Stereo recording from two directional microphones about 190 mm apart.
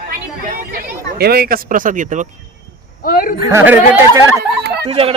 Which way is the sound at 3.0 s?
50° left (ahead or behind).